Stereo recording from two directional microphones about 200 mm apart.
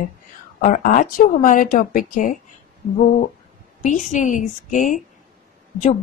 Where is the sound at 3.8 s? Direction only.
40° left (ahead or behind).